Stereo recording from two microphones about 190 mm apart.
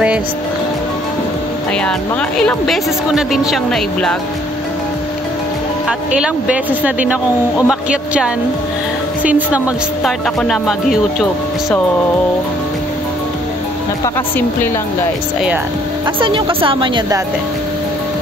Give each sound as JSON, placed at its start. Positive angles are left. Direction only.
{"t": 1.8, "sound": "speech", "side_deg": 5}
{"t": 5.9, "sound": "speech", "side_deg": -5}
{"t": 16.2, "sound": "a woman's voice", "side_deg": -25}